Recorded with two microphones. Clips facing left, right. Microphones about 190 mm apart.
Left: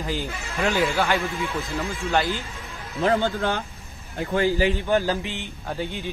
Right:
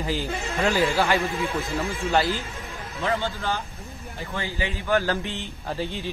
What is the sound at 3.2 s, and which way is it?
Speech, 55° left (ahead or behind).